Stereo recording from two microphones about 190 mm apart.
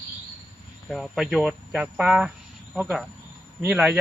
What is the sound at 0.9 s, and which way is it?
Speech, centre (ahead or behind).